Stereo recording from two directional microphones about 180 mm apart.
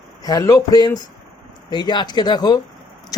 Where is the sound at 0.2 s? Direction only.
20° left (ahead or behind).